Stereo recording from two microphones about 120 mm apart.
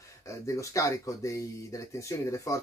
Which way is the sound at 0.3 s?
25° left (ahead or behind).